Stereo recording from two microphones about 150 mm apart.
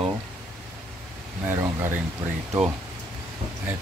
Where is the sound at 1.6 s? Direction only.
15° right (ahead or behind).